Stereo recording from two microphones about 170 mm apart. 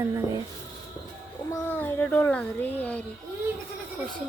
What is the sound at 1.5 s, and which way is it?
A child's voice, 15° left (ahead or behind).